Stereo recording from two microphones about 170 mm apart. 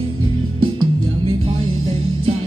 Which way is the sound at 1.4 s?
35° right (ahead or behind).